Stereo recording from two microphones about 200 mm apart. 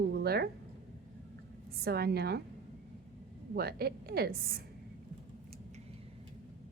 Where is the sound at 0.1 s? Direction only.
55° right (ahead or behind).